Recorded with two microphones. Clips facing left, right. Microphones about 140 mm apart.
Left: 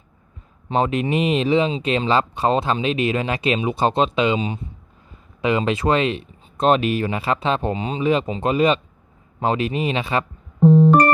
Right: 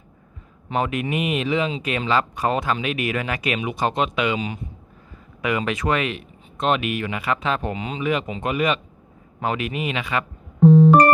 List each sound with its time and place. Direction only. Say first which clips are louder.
0.7 s speech: left 4 dB; 30° left (ahead or behind)